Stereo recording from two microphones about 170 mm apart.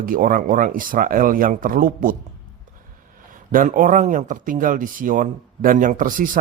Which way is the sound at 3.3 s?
55° right (ahead or behind).